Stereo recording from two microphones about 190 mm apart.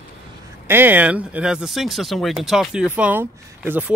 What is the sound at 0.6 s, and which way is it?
Speech, 10° right (ahead or behind).